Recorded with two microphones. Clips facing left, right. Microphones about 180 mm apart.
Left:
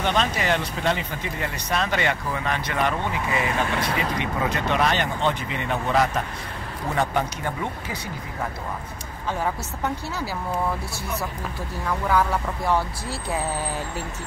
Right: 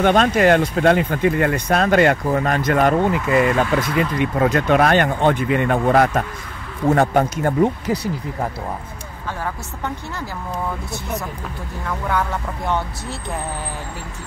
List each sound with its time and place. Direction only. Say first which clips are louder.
0.0 s speech: right 9 dB; 50° right (ahead or behind)
12.1 s music: left 1 dB; centre (ahead or behind)